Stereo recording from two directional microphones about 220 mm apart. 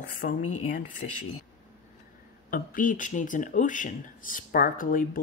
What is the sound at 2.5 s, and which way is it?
Speech, 35° left (ahead or behind).